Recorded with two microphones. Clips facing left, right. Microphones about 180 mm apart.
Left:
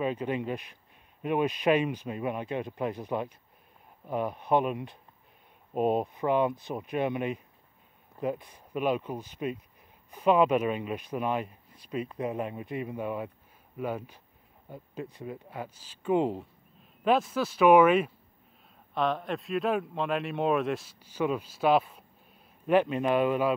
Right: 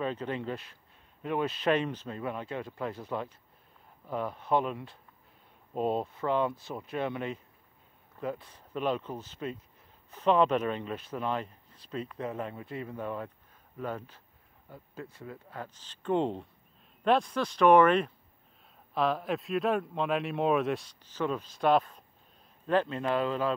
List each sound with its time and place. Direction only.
0.0 s speech: 15° left (ahead or behind)